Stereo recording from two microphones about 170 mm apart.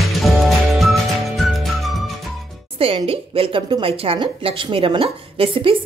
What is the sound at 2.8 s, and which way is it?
A woman's voice, 35° right (ahead or behind).